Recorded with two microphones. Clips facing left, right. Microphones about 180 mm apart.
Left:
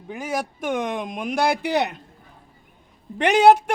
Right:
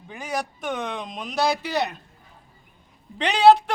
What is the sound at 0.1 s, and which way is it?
Speech, 10° left (ahead or behind).